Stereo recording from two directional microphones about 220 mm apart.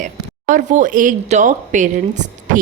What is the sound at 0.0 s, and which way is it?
A woman's voice, 35° right (ahead or behind).